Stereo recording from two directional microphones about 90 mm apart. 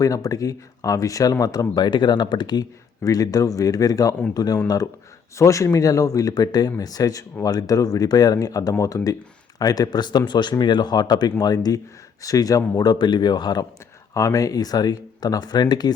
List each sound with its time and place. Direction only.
0.0 s speech: 40° left (ahead or behind)
5.4 s speech: 35° left (ahead or behind); by 13.7 s 50° left (ahead or behind)
14.1 s speech: 35° left (ahead or behind)